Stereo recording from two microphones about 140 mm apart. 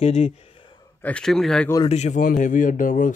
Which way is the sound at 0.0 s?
50° left (ahead or behind).